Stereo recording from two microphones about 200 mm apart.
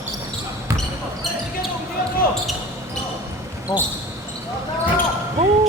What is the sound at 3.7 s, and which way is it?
Speech, 20° left (ahead or behind).